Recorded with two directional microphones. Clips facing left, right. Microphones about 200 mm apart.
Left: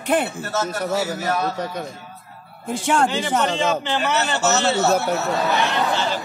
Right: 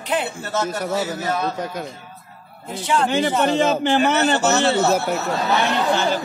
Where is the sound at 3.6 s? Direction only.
50° right (ahead or behind).